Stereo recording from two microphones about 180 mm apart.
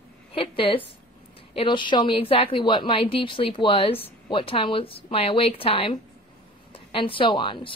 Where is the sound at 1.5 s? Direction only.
30° left (ahead or behind).